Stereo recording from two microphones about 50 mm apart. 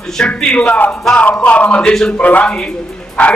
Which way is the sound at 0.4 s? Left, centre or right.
Left.